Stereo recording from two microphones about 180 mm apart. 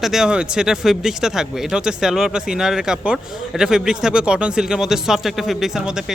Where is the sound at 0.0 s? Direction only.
Centre (ahead or behind).